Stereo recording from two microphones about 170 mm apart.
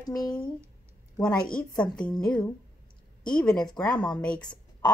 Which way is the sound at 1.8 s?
5° left (ahead or behind).